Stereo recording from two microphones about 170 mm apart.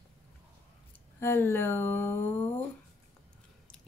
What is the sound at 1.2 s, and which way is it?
Speech, 15° left (ahead or behind).